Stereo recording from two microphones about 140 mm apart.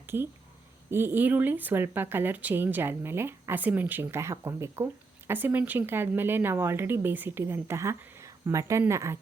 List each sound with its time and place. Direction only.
0.9 s speech: 15° right (ahead or behind)